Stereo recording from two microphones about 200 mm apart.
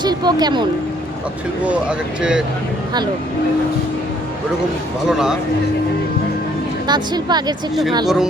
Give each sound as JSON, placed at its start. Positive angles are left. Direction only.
{"t": 0.0, "sound": "speech", "side_deg": -20}
{"t": 1.6, "sound": "speech", "side_deg": -5}
{"t": 5.0, "sound": "speech", "side_deg": -5}
{"t": 6.8, "sound": "speech", "side_deg": -20}
{"t": 8.0, "sound": "speech", "side_deg": 0}